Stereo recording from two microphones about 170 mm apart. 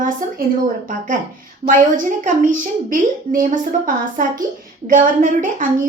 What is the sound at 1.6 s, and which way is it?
A woman's voice, 50° right (ahead or behind).